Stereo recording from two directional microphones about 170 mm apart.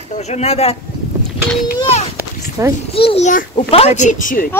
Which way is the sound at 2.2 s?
15° right (ahead or behind).